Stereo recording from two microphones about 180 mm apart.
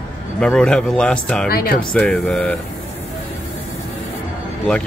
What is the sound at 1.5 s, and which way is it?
Speech, 55° left (ahead or behind).